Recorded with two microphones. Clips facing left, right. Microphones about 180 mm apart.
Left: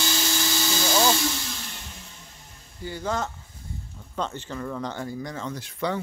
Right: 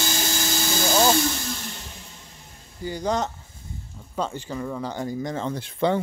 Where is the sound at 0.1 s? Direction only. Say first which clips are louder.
Right 1 dB; 45° right (ahead or behind).